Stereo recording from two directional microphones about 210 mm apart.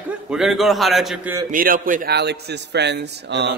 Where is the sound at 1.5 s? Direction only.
40° right (ahead or behind).